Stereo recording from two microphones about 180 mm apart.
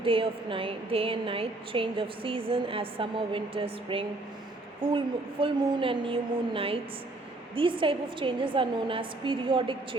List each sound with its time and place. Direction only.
0.0 s a woman's voice: 30° right (ahead or behind)